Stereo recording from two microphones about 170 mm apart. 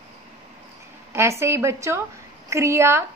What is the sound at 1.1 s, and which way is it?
A woman's voice, 15° right (ahead or behind).